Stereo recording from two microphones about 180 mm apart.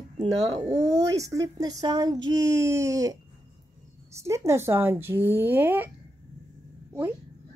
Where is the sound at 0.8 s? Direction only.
20° right (ahead or behind).